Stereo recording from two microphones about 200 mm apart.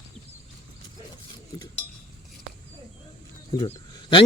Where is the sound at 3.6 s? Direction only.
25° left (ahead or behind).